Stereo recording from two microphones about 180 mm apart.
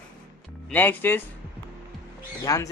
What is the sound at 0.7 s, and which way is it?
Speech, 10° left (ahead or behind).